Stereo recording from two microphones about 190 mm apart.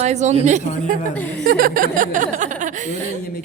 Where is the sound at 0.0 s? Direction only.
35° right (ahead or behind).